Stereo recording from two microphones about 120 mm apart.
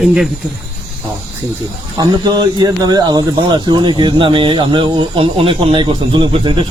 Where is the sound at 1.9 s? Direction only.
35° right (ahead or behind).